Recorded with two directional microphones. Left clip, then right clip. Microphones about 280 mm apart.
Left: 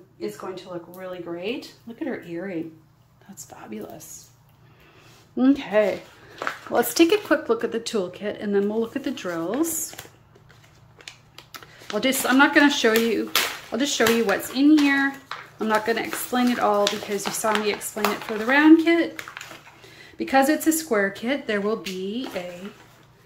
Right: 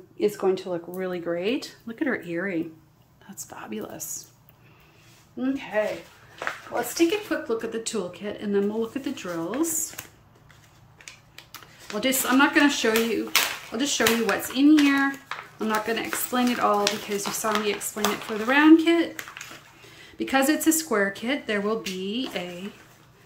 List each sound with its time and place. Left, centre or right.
0.2 s speech: right; by 3.8 s centre
5.4 s speech: left
7.2 s speech: centre
11.1 s speech: centre